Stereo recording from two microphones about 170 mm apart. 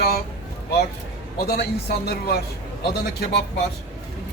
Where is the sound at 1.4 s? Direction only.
70° left (ahead or behind).